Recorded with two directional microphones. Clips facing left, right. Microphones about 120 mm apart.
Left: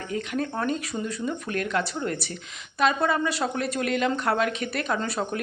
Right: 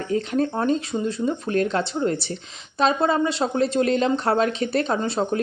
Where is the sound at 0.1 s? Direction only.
30° right (ahead or behind).